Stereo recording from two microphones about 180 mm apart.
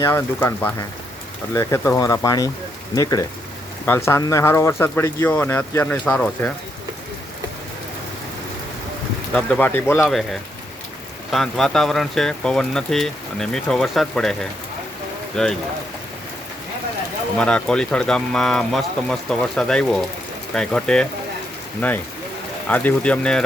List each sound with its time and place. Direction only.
0.0 s speech: 15° left (ahead or behind)
9.3 s speech: 10° left (ahead or behind)
10.0 s speech: centre (ahead or behind)
15.3 s speech: 5° left (ahead or behind)
17.3 s speech: 5° left (ahead or behind)